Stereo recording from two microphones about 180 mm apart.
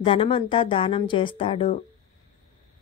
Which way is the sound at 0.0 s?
30° left (ahead or behind).